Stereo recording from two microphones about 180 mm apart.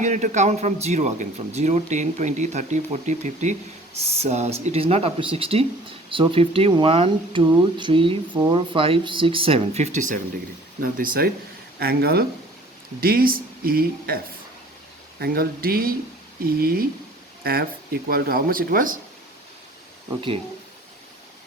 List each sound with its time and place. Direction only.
0.0 s a man's voice: 40° right (ahead or behind)
15.2 s speech: 55° right (ahead or behind)